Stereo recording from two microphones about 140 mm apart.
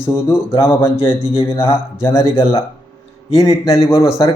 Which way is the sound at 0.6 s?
15° left (ahead or behind).